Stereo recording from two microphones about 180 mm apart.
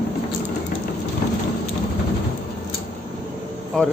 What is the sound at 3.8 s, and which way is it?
Speech, 5° left (ahead or behind).